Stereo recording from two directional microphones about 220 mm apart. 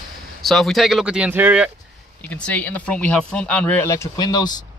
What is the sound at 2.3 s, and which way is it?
Speech, 5° left (ahead or behind).